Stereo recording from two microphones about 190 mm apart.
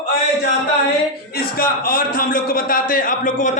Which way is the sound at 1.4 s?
50° left (ahead or behind).